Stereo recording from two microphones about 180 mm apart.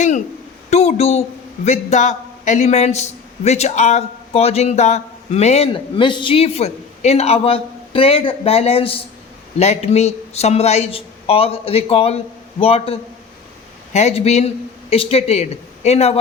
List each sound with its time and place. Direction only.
0.7 s a woman's voice: 35° left (ahead or behind)